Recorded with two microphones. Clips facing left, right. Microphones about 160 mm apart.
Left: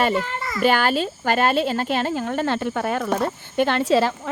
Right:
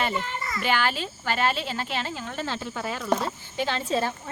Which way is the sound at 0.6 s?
45° left (ahead or behind).